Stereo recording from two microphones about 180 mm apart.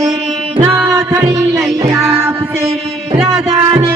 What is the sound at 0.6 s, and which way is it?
Music, 15° right (ahead or behind).